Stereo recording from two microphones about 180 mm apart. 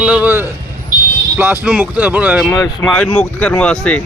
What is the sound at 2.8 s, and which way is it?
Speech, 5° left (ahead or behind).